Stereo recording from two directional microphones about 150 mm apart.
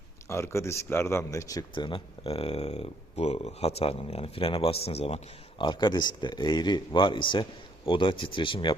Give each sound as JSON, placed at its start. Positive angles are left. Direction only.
{"t": 0.3, "sound": "speech", "side_deg": 20}